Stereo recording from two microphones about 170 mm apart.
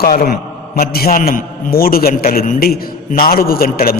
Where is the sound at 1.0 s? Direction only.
45° left (ahead or behind).